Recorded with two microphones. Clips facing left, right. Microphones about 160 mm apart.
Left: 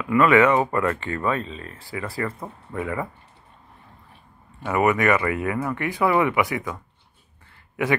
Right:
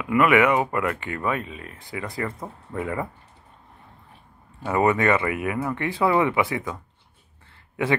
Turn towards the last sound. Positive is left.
turn(degrees=-25)  # may be behind; listen again after turning